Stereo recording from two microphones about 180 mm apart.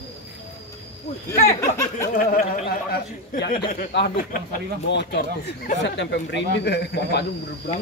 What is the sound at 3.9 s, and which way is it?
Speech, 75° left (ahead or behind).